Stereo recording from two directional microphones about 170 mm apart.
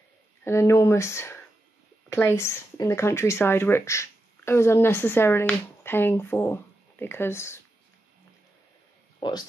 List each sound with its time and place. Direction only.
0.4 s speech: 15° left (ahead or behind)